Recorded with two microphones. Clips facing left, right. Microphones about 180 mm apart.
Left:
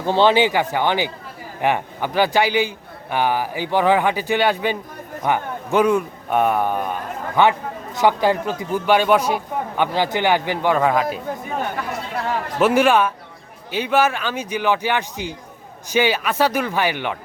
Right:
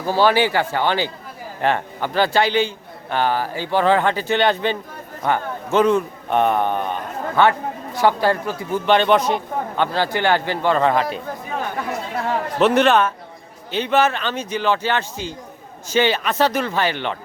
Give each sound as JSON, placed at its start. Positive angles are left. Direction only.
{"t": 0.0, "sound": "a man's voice", "side_deg": 20}
{"t": 12.5, "sound": "a man's voice", "side_deg": 5}